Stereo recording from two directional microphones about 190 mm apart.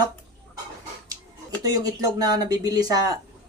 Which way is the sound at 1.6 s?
20° right (ahead or behind).